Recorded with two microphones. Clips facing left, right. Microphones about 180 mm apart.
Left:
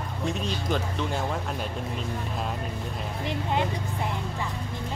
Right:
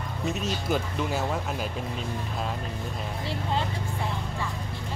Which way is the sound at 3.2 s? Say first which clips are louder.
Left 3 dB; 15° left (ahead or behind).